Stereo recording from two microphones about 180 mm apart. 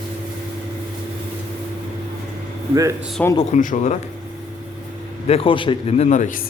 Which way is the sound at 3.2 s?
10° left (ahead or behind).